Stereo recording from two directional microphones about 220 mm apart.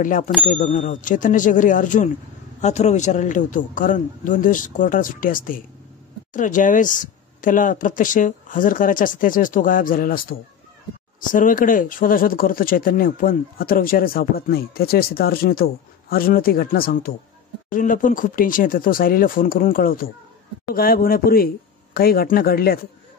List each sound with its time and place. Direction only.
0.0 s speech: 35° left (ahead or behind)